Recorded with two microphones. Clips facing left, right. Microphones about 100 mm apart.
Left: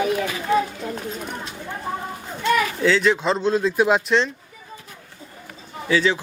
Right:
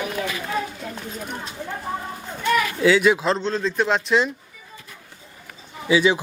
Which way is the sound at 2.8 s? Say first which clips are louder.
Right 2 dB; 10° right (ahead or behind).